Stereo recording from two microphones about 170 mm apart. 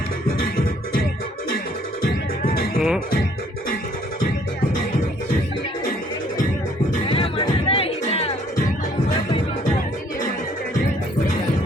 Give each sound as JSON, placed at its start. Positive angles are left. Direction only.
{"t": 2.4, "sound": "music", "side_deg": 55}
{"t": 2.7, "sound": "music", "side_deg": 0}
{"t": 7.1, "sound": "music", "side_deg": 35}